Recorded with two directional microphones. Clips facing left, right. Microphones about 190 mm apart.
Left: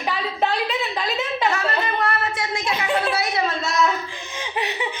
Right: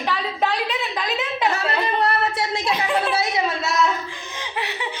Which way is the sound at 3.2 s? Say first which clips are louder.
Right 1 dB; 20° right (ahead or behind).